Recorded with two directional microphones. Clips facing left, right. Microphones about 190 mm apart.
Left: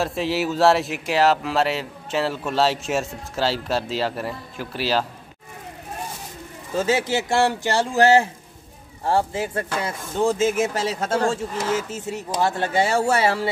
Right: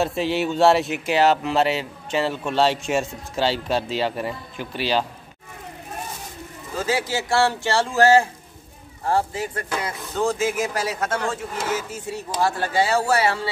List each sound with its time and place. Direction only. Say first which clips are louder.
0.0 s speech: right 1 dB; centre (ahead or behind)
6.8 s speech: left 3 dB; 25° left (ahead or behind)